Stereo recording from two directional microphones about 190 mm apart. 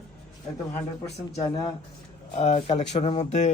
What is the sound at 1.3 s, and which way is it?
Speech, 20° left (ahead or behind).